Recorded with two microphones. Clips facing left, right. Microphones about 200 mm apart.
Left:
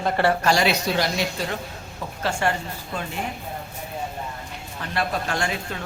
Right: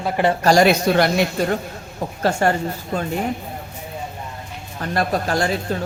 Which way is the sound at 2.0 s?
45° right (ahead or behind).